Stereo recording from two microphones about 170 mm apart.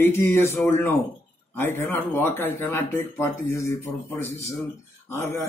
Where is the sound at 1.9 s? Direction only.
15° left (ahead or behind).